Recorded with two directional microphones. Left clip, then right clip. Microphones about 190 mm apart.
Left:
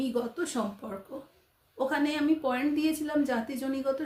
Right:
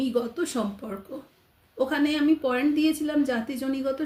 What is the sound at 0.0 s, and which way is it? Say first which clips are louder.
A woman's voice: right 4 dB; 15° right (ahead or behind).